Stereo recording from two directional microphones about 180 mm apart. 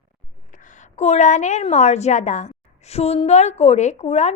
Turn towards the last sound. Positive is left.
turn(degrees=40)  # may be behind; listen again after turning